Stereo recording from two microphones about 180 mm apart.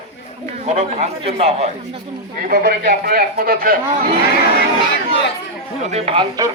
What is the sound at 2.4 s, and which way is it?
A man's voice, 60° right (ahead or behind).